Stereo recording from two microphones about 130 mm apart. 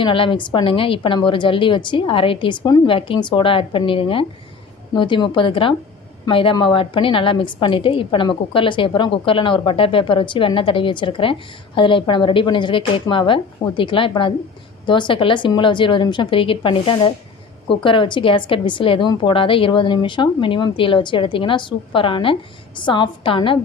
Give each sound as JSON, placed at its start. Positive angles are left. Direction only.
{"t": 0.0, "sound": "a woman's voice", "side_deg": 40}